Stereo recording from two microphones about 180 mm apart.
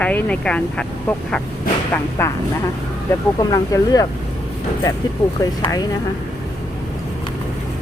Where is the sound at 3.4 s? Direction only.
20° left (ahead or behind).